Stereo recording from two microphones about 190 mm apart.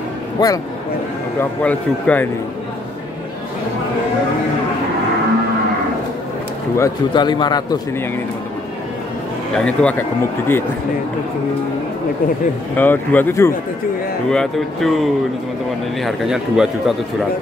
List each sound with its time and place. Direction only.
0.4 s a man's voice: 20° left (ahead or behind)
1.4 s a man's voice: 10° left (ahead or behind)
6.8 s a man's voice: 25° left (ahead or behind)
9.7 s a man's voice: 5° left (ahead or behind)
12.7 s a man's voice: 10° left (ahead or behind)
16.0 s speech: centre (ahead or behind)